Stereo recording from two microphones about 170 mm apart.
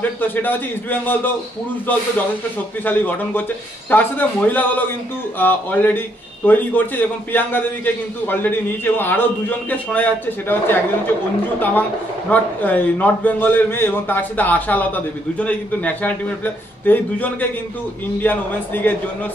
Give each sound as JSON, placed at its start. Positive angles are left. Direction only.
{"t": 0.2, "sound": "a man's voice", "side_deg": 10}
{"t": 12.3, "sound": "a man's voice", "side_deg": 10}